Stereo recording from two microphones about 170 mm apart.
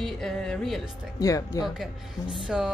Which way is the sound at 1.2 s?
20° left (ahead or behind).